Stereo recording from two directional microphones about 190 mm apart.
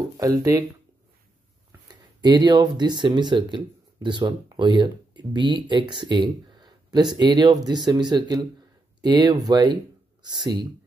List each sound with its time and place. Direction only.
0.2 s speech: 20° right (ahead or behind)
1.9 s speech: 20° right (ahead or behind)